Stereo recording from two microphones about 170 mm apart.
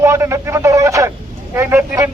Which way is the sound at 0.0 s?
15° right (ahead or behind).